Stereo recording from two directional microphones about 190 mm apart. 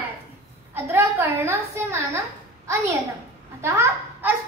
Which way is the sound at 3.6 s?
15° right (ahead or behind).